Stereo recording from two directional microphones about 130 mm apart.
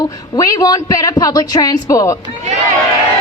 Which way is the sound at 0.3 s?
25° left (ahead or behind).